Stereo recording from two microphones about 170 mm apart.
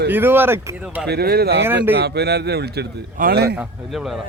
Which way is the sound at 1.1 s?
70° right (ahead or behind).